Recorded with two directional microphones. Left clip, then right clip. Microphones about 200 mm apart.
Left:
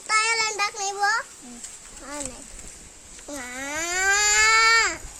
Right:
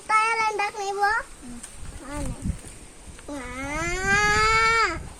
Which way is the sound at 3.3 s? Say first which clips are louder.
Even; 60° left (ahead or behind).